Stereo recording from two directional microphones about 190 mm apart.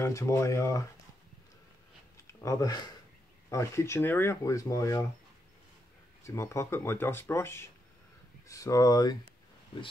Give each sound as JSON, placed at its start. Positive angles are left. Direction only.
{"t": 0.0, "sound": "speech", "side_deg": 15}
{"t": 2.4, "sound": "speech", "side_deg": 20}
{"t": 6.2, "sound": "speech", "side_deg": 15}